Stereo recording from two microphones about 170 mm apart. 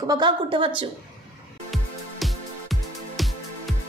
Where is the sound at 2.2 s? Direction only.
Centre (ahead or behind).